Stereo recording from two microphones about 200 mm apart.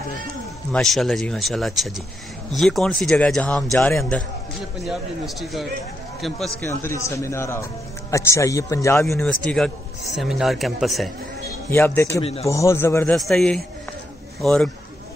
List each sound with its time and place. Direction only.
0.7 s speech: centre (ahead or behind)
6.6 s a man's voice: 15° left (ahead or behind)
9.2 s speech: 5° left (ahead or behind)
11.7 s a man's voice: 10° left (ahead or behind)
12.2 s a man's voice: 30° left (ahead or behind)
12.4 s a man's voice: 15° left (ahead or behind)